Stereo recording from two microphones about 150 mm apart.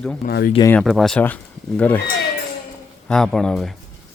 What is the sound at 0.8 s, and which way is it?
A man's voice, centre (ahead or behind).